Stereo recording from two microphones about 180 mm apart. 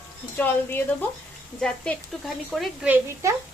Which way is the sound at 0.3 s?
10° left (ahead or behind).